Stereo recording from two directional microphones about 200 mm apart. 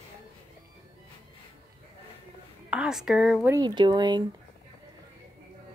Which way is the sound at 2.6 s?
5° right (ahead or behind).